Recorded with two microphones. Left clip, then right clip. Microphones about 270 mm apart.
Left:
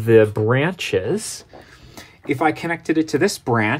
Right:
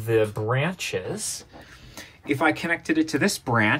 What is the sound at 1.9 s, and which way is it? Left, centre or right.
Speech, left.